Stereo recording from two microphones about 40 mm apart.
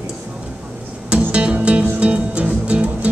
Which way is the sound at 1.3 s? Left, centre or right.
Right.